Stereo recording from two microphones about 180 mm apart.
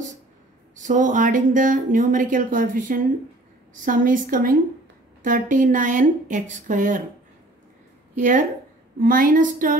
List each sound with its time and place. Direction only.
0.7 s speech: 45° right (ahead or behind)
8.2 s speech: 45° right (ahead or behind)